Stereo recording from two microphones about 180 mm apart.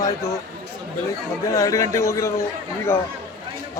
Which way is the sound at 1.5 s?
20° left (ahead or behind).